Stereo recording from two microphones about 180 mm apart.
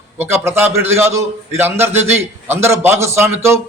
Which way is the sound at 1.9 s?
35° right (ahead or behind).